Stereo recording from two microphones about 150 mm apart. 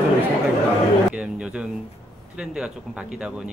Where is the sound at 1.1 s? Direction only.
5° right (ahead or behind).